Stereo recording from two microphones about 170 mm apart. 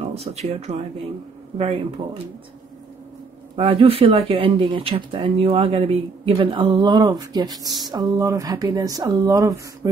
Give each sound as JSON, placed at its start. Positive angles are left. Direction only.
{"t": 0.0, "sound": "speech", "side_deg": -40}
{"t": 3.5, "sound": "speech", "side_deg": -35}